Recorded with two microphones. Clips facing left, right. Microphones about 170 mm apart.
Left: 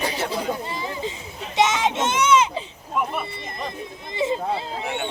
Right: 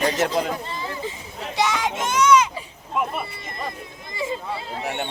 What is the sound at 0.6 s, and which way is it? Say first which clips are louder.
Speech: left 1 dB; 15° left (ahead or behind).